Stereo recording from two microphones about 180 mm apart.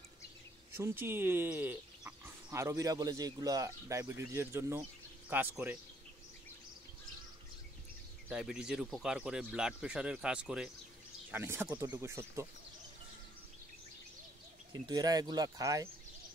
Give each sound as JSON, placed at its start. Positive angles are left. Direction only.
{"t": 0.7, "sound": "speech", "side_deg": -15}
{"t": 8.3, "sound": "speech", "side_deg": -5}
{"t": 14.7, "sound": "speech", "side_deg": -25}